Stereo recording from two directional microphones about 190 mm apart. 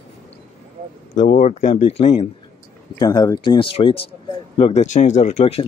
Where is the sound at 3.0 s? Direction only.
20° left (ahead or behind).